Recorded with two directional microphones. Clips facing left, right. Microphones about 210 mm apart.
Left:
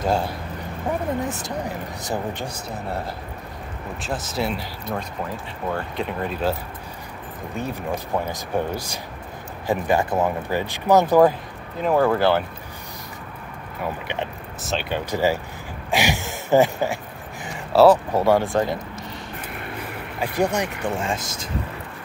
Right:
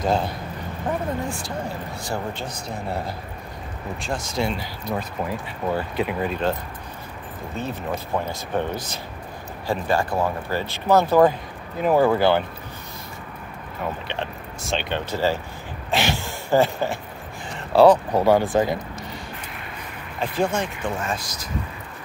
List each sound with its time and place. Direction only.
0.0 s speech: 10° left (ahead or behind)
1.2 s speech: 20° left (ahead or behind)
4.0 s speech: 5° left (ahead or behind)
5.7 s speech: 5° right (ahead or behind)
7.5 s speech: 15° left (ahead or behind)
11.8 s speech: 5° right (ahead or behind)
14.0 s speech: 15° left (ahead or behind)
14.6 s speech: 5° left (ahead or behind)
17.7 s speech: 5° left (ahead or behind)
20.2 s speech: 15° left (ahead or behind)
21.0 s speech: 25° left (ahead or behind)